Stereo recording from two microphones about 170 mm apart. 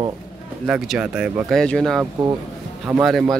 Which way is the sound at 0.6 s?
5° right (ahead or behind).